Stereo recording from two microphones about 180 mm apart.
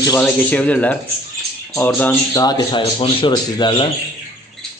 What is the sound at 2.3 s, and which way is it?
Speech, 20° left (ahead or behind).